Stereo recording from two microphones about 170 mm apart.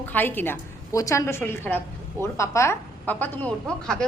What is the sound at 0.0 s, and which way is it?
A woman's voice, 10° left (ahead or behind).